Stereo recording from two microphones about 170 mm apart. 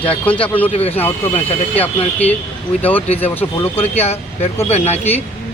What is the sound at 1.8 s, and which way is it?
Speech, 10° left (ahead or behind).